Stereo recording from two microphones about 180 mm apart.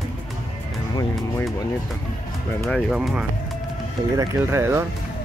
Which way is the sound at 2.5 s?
10° left (ahead or behind).